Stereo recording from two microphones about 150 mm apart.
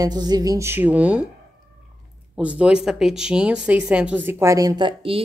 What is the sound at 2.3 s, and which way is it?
A woman's voice, 10° right (ahead or behind).